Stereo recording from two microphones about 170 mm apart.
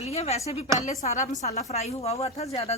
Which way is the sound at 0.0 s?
40° left (ahead or behind).